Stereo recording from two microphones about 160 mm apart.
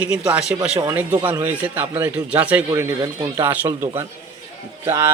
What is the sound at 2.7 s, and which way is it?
Speech, 25° right (ahead or behind).